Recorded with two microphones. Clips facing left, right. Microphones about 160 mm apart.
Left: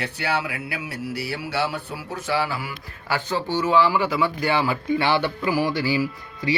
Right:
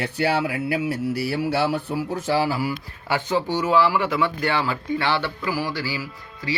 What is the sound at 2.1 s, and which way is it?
Speech, 35° right (ahead or behind).